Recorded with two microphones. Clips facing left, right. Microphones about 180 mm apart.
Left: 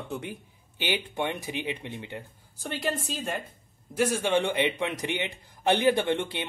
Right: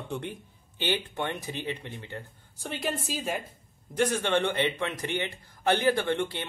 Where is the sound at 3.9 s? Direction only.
5° left (ahead or behind).